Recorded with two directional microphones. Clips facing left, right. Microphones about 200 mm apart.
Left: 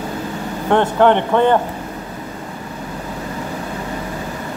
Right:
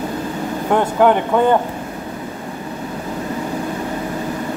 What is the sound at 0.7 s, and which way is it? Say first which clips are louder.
Speech: left 1 dB; 5° right (ahead or behind).